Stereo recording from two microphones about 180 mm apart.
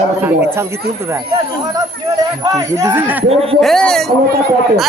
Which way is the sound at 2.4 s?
20° right (ahead or behind).